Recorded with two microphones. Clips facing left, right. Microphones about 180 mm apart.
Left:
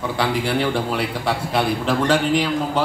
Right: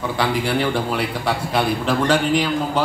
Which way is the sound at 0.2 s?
25° left (ahead or behind).